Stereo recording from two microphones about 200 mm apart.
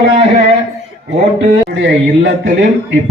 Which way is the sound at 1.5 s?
60° right (ahead or behind).